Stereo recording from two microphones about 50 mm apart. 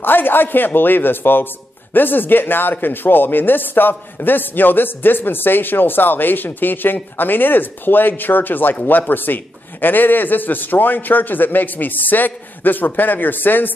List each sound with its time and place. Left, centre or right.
0.0 s a man's voice: left